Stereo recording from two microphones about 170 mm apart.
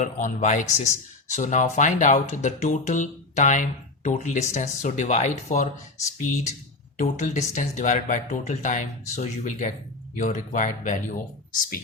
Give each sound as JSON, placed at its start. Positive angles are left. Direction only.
{"t": 0.0, "sound": "speech", "side_deg": 50}
{"t": 7.0, "sound": "speech", "side_deg": 45}